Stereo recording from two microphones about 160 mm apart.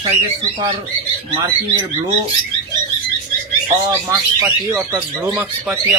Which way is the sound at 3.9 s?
20° right (ahead or behind).